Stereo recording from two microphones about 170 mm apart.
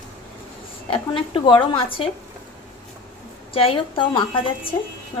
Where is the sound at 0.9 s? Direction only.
30° left (ahead or behind).